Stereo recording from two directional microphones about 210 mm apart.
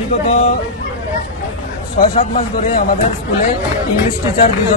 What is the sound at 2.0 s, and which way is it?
Speech, 40° left (ahead or behind).